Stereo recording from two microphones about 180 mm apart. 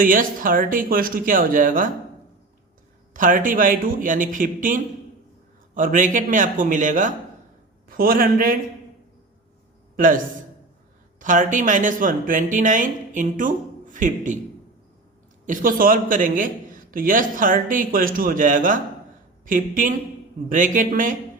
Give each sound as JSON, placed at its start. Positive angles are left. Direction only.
{"t": 0.0, "sound": "speech", "side_deg": -50}
{"t": 3.1, "sound": "speech", "side_deg": -45}
{"t": 9.9, "sound": "a man's voice", "side_deg": -50}
{"t": 15.4, "sound": "speech", "side_deg": -50}